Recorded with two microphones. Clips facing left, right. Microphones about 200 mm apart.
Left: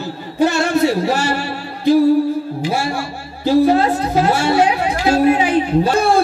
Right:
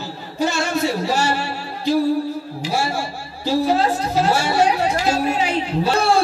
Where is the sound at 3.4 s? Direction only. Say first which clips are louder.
Left 5 dB; 55° left (ahead or behind).